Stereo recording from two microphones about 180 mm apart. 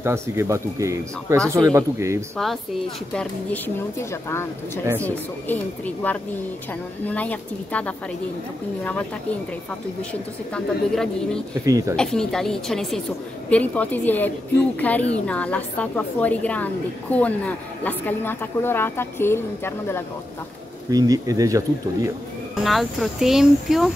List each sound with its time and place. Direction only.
0.0 s speech: 15° right (ahead or behind)
2.3 s speech: centre (ahead or behind)
3.2 s a woman's voice: 10° left (ahead or behind)
10.5 s a woman's voice: 5° left (ahead or behind)
20.9 s speech: 20° right (ahead or behind)
22.6 s speech: centre (ahead or behind)